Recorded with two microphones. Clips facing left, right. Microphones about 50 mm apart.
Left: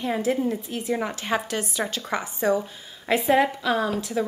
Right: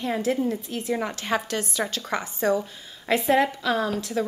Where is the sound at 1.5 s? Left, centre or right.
Centre.